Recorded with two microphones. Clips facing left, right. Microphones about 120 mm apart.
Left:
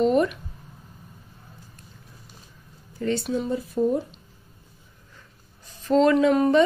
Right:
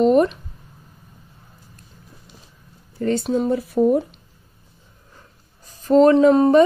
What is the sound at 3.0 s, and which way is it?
Speech, 45° right (ahead or behind).